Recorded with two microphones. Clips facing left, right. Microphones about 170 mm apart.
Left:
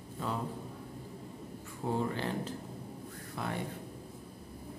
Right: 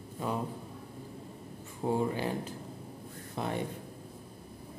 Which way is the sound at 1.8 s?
15° right (ahead or behind).